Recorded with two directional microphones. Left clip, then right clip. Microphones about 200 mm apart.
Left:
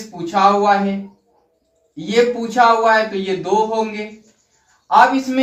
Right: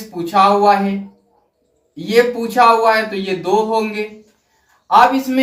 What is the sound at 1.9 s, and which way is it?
A man's voice, 5° left (ahead or behind).